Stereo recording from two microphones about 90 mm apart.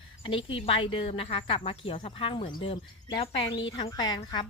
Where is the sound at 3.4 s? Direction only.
65° left (ahead or behind).